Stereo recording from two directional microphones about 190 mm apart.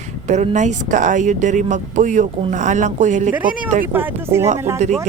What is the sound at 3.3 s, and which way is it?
Speech, 10° right (ahead or behind).